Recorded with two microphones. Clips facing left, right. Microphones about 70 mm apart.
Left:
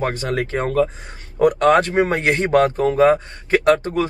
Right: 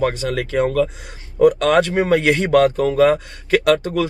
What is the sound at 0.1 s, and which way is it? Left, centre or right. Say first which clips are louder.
Speech: right 1 dB; left.